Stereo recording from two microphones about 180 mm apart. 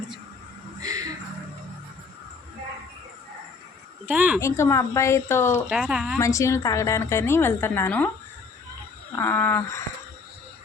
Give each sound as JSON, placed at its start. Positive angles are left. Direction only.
{"t": 0.8, "sound": "a sound", "side_deg": -20}
{"t": 4.0, "sound": "speech", "side_deg": -10}
{"t": 4.4, "sound": "a woman's voice", "side_deg": 15}
{"t": 5.6, "sound": "speech", "side_deg": -5}
{"t": 6.1, "sound": "a woman's voice", "side_deg": 15}
{"t": 9.1, "sound": "a woman's voice", "side_deg": 15}